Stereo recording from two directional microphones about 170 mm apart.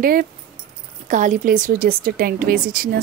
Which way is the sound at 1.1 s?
45° right (ahead or behind).